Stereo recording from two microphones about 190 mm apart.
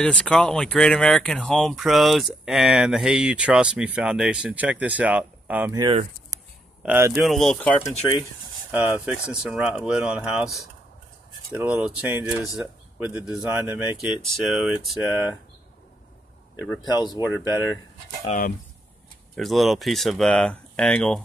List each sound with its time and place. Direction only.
0.0 s speech: 5° left (ahead or behind)
6.8 s speech: 10° right (ahead or behind)
7.2 s speech: centre (ahead or behind)
8.7 s speech: 5° right (ahead or behind)
16.8 s speech: 20° left (ahead or behind)
18.2 s speech: 40° left (ahead or behind)
19.3 s speech: centre (ahead or behind)